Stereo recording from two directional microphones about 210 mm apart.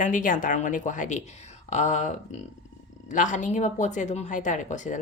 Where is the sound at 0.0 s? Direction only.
40° left (ahead or behind).